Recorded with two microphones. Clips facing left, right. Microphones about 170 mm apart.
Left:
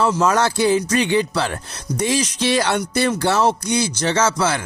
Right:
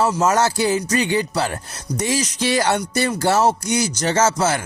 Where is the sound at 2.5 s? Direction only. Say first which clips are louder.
Right 1 dB; 45° right (ahead or behind).